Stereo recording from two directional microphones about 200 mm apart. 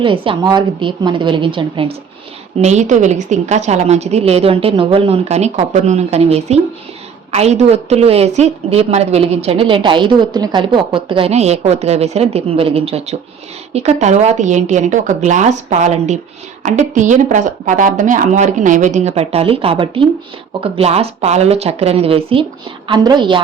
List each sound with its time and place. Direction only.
0.0 s a woman's voice: 25° right (ahead or behind)